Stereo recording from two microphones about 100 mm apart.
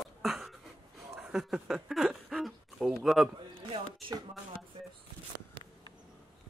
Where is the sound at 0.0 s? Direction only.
5° right (ahead or behind).